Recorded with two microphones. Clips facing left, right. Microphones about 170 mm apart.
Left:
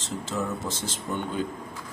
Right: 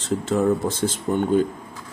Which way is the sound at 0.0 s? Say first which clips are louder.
Right 10 dB; 55° right (ahead or behind).